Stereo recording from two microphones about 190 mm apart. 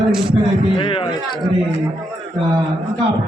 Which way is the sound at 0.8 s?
25° left (ahead or behind).